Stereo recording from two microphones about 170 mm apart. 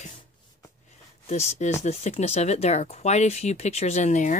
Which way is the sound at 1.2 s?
40° left (ahead or behind).